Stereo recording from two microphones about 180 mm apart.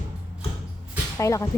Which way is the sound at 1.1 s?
15° left (ahead or behind).